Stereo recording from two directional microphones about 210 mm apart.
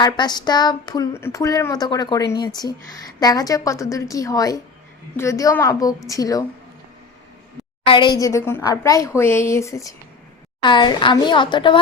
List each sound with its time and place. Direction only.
0.0 s a woman's voice: 20° left (ahead or behind)
7.9 s a woman's voice: 20° left (ahead or behind)